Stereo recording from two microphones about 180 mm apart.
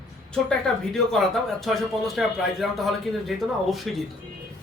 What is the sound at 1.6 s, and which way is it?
A man's voice, centre (ahead or behind).